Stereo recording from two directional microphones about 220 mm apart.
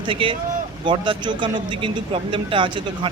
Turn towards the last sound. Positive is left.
turn(degrees=-20)  # may be behind; listen again after turning